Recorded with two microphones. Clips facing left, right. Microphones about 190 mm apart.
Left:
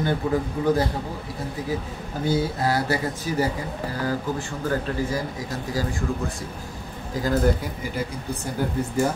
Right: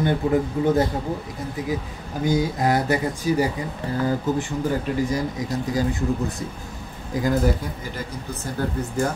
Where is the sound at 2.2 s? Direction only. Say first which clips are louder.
Right 2 dB; 15° right (ahead or behind).